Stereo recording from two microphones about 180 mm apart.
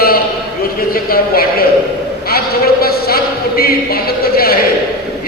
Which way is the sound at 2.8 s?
55° left (ahead or behind).